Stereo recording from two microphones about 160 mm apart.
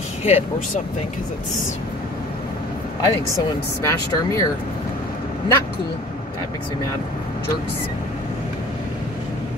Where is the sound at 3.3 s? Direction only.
20° left (ahead or behind).